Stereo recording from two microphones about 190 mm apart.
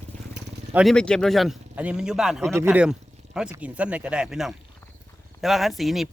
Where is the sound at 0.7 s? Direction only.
Centre (ahead or behind).